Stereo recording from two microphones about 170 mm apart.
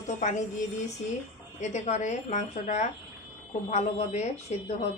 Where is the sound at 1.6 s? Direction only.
40° left (ahead or behind).